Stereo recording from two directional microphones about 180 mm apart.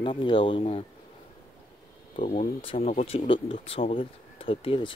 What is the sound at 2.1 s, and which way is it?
Speech, 45° left (ahead or behind).